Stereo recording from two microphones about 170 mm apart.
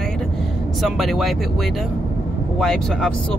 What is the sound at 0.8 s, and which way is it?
Speech, centre (ahead or behind).